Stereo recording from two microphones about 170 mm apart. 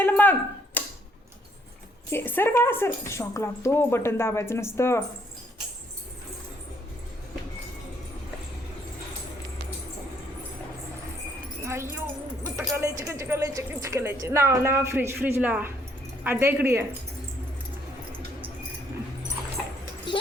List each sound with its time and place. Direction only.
0.0 s a sound: 10° left (ahead or behind)
2.0 s speech: 10° left (ahead or behind)
11.6 s speech: 15° right (ahead or behind)